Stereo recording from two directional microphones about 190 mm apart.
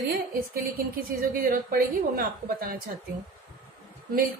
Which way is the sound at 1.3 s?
50° right (ahead or behind).